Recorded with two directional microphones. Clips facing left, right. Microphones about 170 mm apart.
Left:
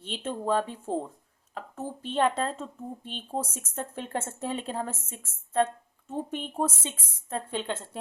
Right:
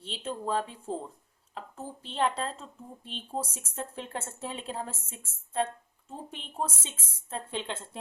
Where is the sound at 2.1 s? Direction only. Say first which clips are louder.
Left 4 dB; 50° left (ahead or behind).